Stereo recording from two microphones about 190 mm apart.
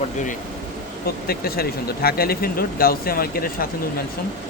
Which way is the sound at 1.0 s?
55° left (ahead or behind).